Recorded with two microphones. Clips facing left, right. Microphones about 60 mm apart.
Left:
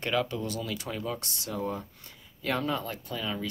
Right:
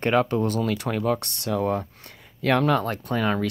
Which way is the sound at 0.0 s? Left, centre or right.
Right.